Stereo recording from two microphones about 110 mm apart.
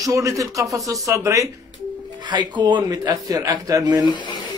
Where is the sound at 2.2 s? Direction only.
45° right (ahead or behind).